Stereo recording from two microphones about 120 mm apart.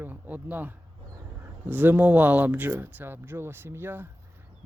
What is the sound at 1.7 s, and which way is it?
Speech, 15° right (ahead or behind).